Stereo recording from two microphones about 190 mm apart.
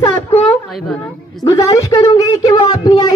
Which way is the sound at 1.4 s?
20° left (ahead or behind).